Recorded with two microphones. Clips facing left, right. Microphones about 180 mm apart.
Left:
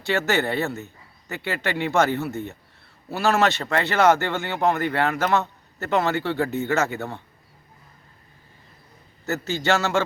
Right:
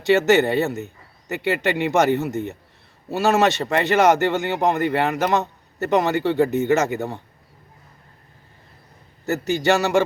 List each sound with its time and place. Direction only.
0.0 s speech: 20° right (ahead or behind)
9.2 s speech: 15° right (ahead or behind)